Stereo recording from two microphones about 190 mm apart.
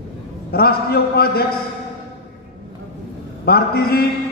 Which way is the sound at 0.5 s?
55° left (ahead or behind).